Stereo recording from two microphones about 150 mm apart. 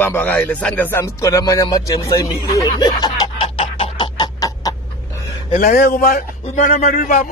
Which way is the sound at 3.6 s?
35° left (ahead or behind).